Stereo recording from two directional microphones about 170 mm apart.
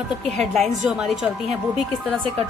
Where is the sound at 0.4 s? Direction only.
Centre (ahead or behind).